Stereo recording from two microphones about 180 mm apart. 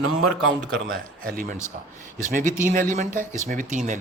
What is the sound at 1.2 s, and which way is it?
Speech, 50° right (ahead or behind).